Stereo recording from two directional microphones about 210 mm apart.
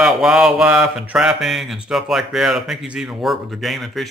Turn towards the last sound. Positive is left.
turn(degrees=0)  # may be behind; listen again after turning